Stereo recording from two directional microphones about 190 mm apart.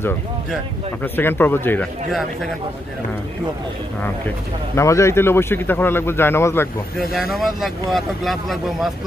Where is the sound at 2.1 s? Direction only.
Centre (ahead or behind).